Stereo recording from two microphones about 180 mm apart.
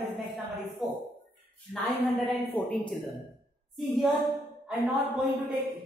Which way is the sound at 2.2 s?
5° left (ahead or behind).